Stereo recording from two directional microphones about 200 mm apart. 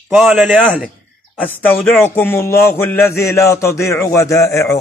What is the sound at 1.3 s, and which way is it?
Speech, 10° left (ahead or behind).